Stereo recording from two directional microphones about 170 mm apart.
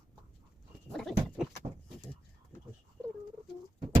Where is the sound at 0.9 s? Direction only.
Centre (ahead or behind).